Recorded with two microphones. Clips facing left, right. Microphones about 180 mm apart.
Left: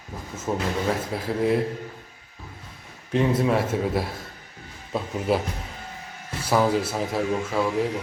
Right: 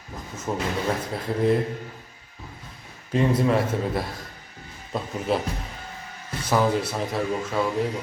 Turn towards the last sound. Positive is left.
turn(degrees=0)  # may be behind; listen again after turning